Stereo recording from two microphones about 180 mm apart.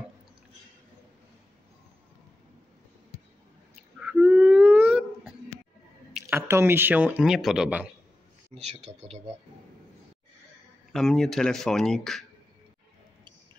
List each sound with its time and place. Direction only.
4.0 s a sound: 5° right (ahead or behind)
6.1 s speech: 15° right (ahead or behind)
8.5 s speech: 40° right (ahead or behind)
10.9 s speech: centre (ahead or behind)